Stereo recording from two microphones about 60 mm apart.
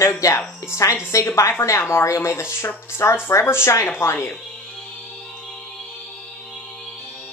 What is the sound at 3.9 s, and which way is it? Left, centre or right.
Speech, left.